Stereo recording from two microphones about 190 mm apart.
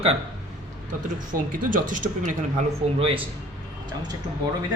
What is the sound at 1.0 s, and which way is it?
Speech, 45° right (ahead or behind).